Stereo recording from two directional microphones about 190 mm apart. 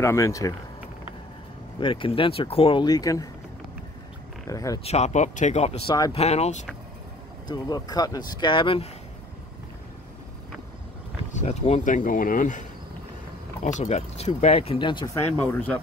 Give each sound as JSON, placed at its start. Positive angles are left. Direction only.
{"t": 0.0, "sound": "speech", "side_deg": 15}
{"t": 1.8, "sound": "speech", "side_deg": 25}
{"t": 4.5, "sound": "speech", "side_deg": 15}
{"t": 4.8, "sound": "speech", "side_deg": 35}
{"t": 6.1, "sound": "speech", "side_deg": 35}
{"t": 7.4, "sound": "speech", "side_deg": 20}
{"t": 11.3, "sound": "speech", "side_deg": 35}
{"t": 15.3, "sound": "speech", "side_deg": 10}